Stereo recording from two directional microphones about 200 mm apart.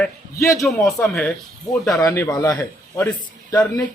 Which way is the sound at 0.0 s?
15° left (ahead or behind).